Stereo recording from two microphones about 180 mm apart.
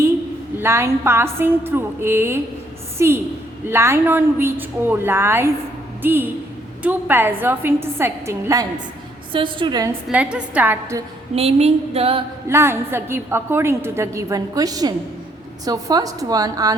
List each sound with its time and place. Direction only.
0.6 s a woman's voice: 15° right (ahead or behind)
9.3 s a woman's voice: 30° right (ahead or behind)
10.1 s a woman's voice: 5° right (ahead or behind)
11.3 s a sound: 35° right (ahead or behind)
12.5 s a woman's voice: 15° right (ahead or behind)